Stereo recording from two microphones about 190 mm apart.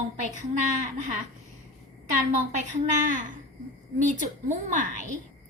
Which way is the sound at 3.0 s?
40° right (ahead or behind).